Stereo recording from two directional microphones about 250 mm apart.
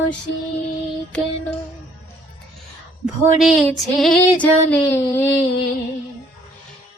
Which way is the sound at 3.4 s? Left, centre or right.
Centre.